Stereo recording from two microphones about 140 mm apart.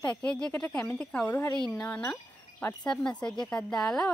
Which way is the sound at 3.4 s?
5° left (ahead or behind).